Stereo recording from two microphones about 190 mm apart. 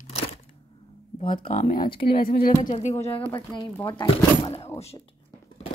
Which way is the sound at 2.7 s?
35° left (ahead or behind).